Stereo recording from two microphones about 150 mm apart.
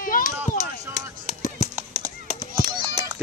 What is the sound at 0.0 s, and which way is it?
Chop, 70° left (ahead or behind).